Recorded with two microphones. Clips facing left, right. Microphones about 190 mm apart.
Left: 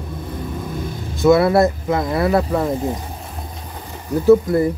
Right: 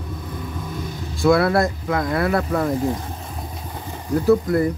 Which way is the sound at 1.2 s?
20° left (ahead or behind).